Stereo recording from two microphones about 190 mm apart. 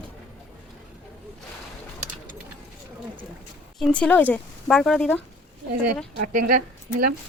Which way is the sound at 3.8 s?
5° left (ahead or behind).